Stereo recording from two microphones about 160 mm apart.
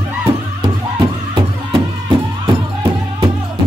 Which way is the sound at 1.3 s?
30° right (ahead or behind).